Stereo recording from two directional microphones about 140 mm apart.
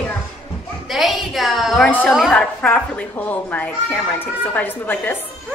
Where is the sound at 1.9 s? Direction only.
10° left (ahead or behind).